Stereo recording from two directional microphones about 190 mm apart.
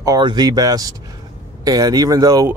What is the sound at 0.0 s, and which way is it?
Speech, 20° right (ahead or behind).